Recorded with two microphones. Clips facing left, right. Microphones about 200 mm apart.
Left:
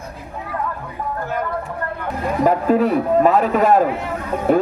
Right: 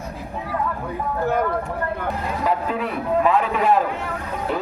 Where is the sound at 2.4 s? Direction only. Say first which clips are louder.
Left 9 dB; 45° left (ahead or behind).